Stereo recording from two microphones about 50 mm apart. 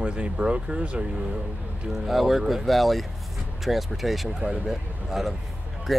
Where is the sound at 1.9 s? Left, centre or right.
Centre.